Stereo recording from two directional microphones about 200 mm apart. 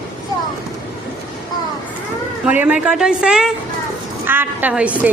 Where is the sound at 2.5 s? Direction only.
5° right (ahead or behind).